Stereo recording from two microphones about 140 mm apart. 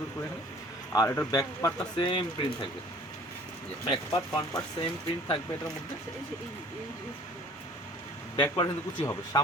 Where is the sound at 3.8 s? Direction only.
35° left (ahead or behind).